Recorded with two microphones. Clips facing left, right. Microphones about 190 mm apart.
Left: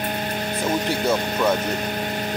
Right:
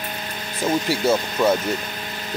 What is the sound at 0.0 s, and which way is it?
Music, 55° left (ahead or behind).